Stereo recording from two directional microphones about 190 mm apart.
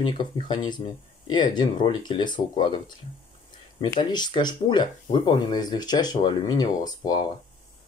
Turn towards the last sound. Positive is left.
turn(degrees=20)  # may be behind; listen again after turning